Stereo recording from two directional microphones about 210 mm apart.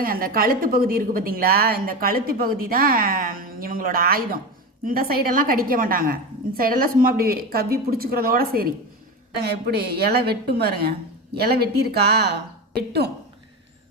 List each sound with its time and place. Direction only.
0.0 s a woman's voice: 45° right (ahead or behind)